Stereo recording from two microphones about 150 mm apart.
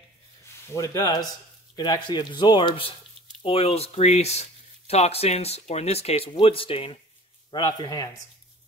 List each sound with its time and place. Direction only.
0.7 s speech: 25° left (ahead or behind)
3.4 s speech: 40° left (ahead or behind)
7.5 s speech: 25° left (ahead or behind)